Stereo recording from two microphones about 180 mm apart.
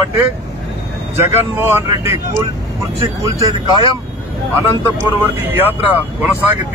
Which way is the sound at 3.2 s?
20° right (ahead or behind).